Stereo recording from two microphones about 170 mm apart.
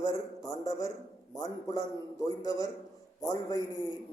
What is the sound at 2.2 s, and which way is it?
A man's voice, 20° left (ahead or behind).